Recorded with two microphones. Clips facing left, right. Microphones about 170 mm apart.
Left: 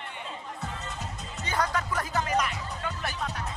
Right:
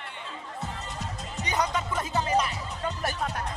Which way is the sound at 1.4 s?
20° right (ahead or behind).